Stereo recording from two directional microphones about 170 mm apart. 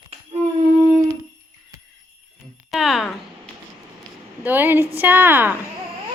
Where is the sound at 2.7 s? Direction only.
Centre (ahead or behind).